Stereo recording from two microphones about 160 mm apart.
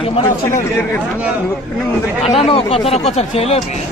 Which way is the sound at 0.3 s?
15° left (ahead or behind).